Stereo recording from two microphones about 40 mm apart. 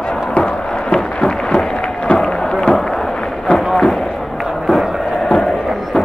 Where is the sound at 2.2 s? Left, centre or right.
Centre.